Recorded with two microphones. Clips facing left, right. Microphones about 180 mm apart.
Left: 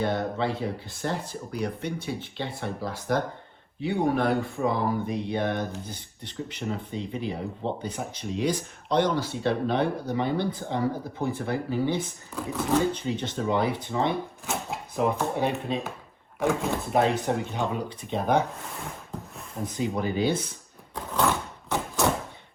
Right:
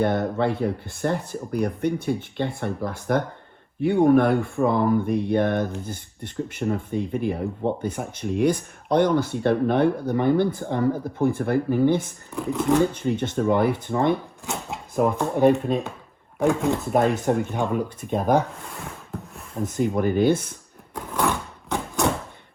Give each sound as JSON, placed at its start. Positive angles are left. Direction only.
{"t": 0.0, "sound": "speech", "side_deg": -55}
{"t": 12.3, "sound": "speech", "side_deg": -15}
{"t": 12.9, "sound": "speech", "side_deg": -55}
{"t": 14.4, "sound": "speech", "side_deg": -20}
{"t": 14.9, "sound": "speech", "side_deg": -50}
{"t": 16.4, "sound": "speech", "side_deg": -15}
{"t": 16.9, "sound": "speech", "side_deg": -55}
{"t": 19.6, "sound": "speech", "side_deg": -50}
{"t": 21.7, "sound": "a sound", "side_deg": -15}